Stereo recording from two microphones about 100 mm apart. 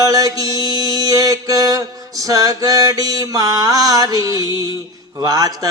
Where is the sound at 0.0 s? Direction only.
35° right (ahead or behind).